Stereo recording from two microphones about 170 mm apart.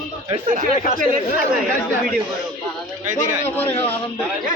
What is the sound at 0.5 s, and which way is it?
Speech, 50° right (ahead or behind).